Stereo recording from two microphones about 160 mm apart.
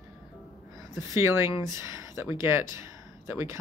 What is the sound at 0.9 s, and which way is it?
Speech, 20° right (ahead or behind).